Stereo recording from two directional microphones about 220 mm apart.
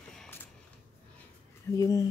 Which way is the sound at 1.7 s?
15° left (ahead or behind).